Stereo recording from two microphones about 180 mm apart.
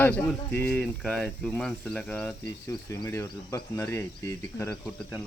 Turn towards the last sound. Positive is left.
turn(degrees=15)  # may be behind; listen again after turning